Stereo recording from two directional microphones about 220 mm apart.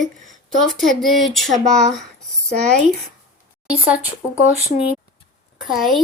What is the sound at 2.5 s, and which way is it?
Speech, 30° right (ahead or behind).